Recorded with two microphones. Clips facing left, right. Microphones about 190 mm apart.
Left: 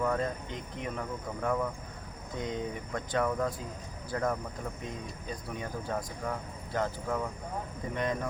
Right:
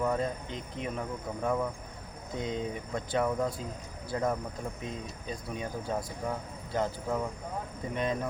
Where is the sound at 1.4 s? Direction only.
10° right (ahead or behind).